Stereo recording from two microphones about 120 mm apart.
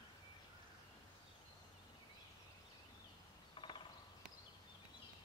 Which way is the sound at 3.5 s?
45° left (ahead or behind).